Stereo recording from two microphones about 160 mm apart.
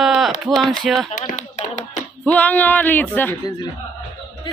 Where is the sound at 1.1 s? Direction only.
50° left (ahead or behind).